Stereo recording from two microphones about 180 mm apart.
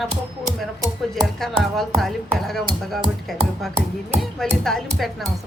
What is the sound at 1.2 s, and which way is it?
Music, centre (ahead or behind).